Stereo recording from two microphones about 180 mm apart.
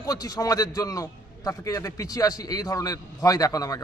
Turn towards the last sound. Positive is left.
turn(degrees=20)  # may be behind; listen again after turning